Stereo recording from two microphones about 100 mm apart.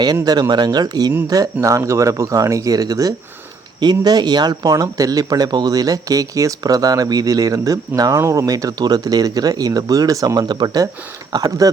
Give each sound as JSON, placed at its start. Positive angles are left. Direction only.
{"t": 0.0, "sound": "speech", "side_deg": -40}
{"t": 1.6, "sound": "speech", "side_deg": -30}